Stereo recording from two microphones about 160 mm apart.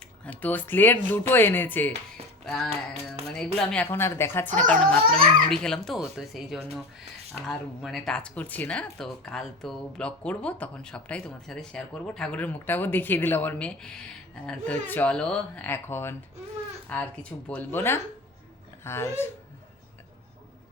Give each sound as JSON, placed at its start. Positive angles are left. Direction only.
{"t": 0.3, "sound": "speech", "side_deg": 10}
{"t": 2.4, "sound": "a sound", "side_deg": 5}
{"t": 3.3, "sound": "speech", "side_deg": 5}